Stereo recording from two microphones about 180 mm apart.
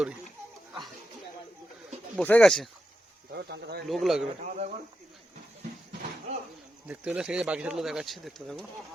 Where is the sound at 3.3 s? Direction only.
65° right (ahead or behind).